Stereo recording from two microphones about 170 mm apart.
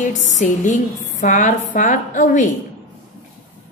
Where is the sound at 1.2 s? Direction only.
45° left (ahead or behind).